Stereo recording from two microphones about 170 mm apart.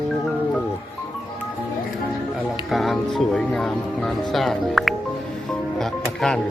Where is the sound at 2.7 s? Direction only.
Centre (ahead or behind).